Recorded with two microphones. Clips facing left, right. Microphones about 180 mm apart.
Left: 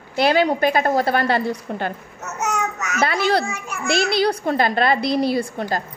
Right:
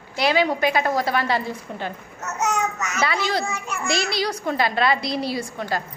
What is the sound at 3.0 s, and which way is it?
A woman's voice, 60° left (ahead or behind).